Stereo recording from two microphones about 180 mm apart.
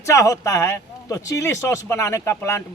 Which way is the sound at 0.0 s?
15° left (ahead or behind).